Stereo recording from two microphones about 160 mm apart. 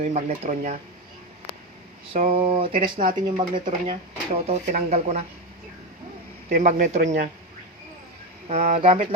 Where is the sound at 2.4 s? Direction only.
35° right (ahead or behind).